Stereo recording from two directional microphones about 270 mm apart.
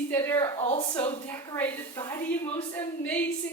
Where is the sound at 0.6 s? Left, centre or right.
Left; by 3.2 s centre.